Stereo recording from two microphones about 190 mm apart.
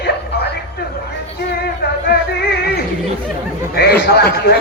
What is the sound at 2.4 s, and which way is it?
Music, 55° left (ahead or behind).